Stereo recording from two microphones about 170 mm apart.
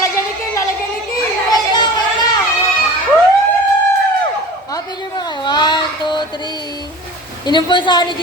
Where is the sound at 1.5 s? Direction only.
25° left (ahead or behind).